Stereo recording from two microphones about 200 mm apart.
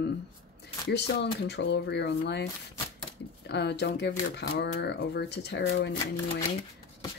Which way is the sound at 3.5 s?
60° left (ahead or behind).